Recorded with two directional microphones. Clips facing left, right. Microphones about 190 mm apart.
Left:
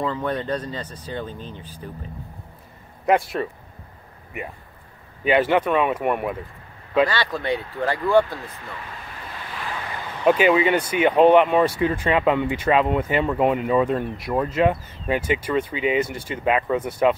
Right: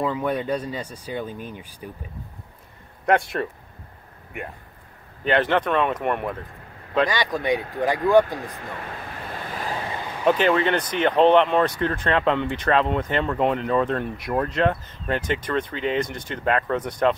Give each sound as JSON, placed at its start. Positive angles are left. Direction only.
{"t": 0.0, "sound": "speech", "side_deg": -10}
{"t": 3.1, "sound": "speech", "side_deg": 0}
{"t": 5.2, "sound": "speech", "side_deg": 10}
{"t": 7.1, "sound": "speech", "side_deg": -15}
{"t": 9.5, "sound": "vehicle", "side_deg": -40}
{"t": 10.2, "sound": "speech", "side_deg": 5}